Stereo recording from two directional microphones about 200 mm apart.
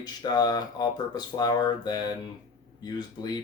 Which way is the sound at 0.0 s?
20° left (ahead or behind).